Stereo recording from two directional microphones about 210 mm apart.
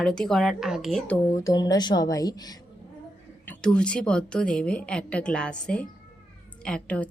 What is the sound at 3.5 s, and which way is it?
A woman's voice, 5° left (ahead or behind).